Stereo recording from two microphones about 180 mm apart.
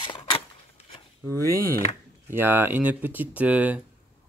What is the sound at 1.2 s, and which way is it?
Speech, 15° right (ahead or behind).